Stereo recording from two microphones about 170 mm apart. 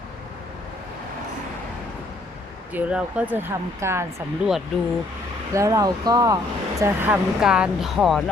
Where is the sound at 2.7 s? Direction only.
10° right (ahead or behind).